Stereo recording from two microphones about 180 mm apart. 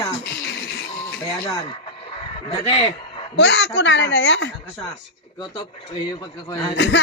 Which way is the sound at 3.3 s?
75° left (ahead or behind).